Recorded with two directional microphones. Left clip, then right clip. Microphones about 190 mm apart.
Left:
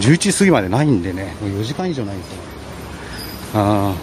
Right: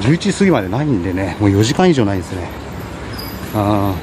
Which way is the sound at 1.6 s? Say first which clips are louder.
Right 10 dB; 20° right (ahead or behind).